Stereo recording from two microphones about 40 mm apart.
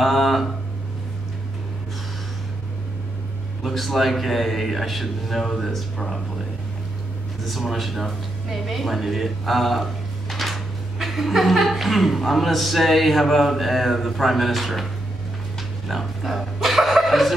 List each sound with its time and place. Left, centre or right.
0.0 s a sound: centre
3.6 s speech: centre
7.4 s speech: centre
15.9 s speech: centre